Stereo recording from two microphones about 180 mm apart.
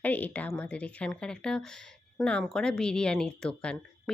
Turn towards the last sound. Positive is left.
turn(degrees=5)  # may be behind; listen again after turning